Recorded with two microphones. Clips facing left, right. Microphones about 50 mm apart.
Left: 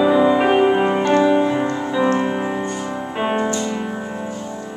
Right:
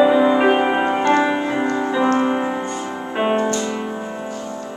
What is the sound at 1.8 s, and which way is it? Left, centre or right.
Music, centre.